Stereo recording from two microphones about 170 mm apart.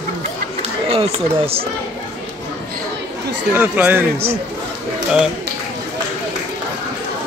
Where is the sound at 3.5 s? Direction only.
10° right (ahead or behind).